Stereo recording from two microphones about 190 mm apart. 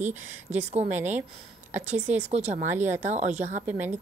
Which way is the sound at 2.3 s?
35° right (ahead or behind).